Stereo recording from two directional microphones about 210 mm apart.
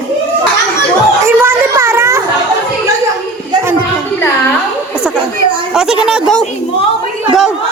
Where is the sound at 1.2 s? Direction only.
10° right (ahead or behind).